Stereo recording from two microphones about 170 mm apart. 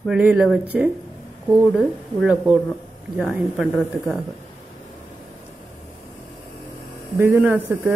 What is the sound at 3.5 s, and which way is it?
Speech, centre (ahead or behind).